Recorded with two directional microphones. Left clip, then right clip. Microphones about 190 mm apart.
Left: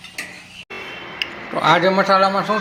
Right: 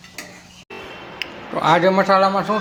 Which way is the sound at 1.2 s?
5° right (ahead or behind).